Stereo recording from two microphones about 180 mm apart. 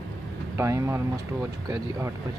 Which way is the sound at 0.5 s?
15° right (ahead or behind).